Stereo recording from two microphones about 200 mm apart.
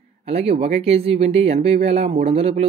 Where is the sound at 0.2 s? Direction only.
30° right (ahead or behind).